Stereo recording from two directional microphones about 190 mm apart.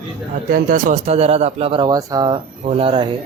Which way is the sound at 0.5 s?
45° right (ahead or behind).